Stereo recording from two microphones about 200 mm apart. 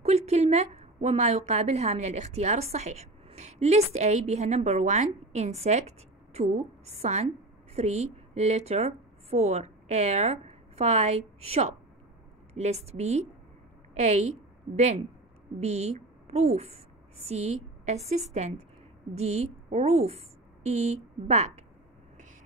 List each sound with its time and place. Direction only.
0.0 s a woman's voice: 30° right (ahead or behind)
15.6 s a woman's voice: 35° right (ahead or behind)